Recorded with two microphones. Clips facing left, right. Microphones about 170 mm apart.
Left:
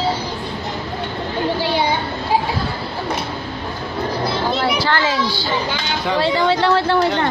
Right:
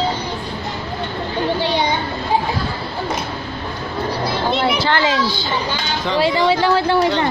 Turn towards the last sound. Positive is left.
turn(degrees=-10)  # may be behind; listen again after turning